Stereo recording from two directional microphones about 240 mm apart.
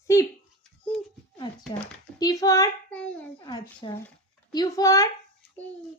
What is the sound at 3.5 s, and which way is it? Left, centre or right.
A child's voice, centre.